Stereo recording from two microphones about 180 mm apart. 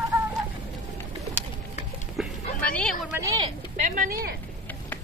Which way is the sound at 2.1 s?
5° left (ahead or behind).